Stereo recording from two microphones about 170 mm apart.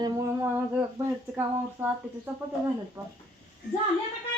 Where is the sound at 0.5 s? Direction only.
15° right (ahead or behind).